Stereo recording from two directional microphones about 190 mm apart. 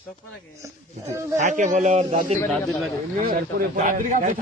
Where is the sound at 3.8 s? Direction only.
45° right (ahead or behind).